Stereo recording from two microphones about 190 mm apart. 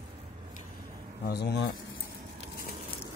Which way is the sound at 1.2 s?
65° left (ahead or behind).